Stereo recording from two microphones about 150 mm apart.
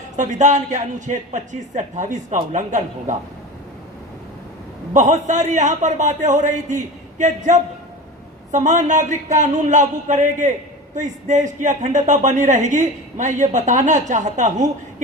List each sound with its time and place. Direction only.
0.2 s a man's voice: 55° right (ahead or behind)
4.9 s a man's voice: 55° right (ahead or behind)